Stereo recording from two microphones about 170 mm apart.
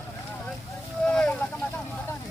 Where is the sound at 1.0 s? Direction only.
5° left (ahead or behind).